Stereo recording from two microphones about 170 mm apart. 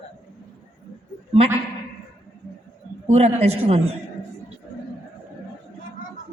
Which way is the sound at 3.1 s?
40° right (ahead or behind).